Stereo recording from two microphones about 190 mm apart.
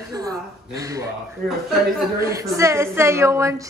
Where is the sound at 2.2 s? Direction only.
15° right (ahead or behind).